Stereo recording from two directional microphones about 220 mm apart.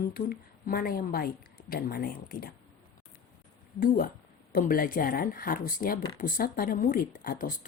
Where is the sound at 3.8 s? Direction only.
40° left (ahead or behind).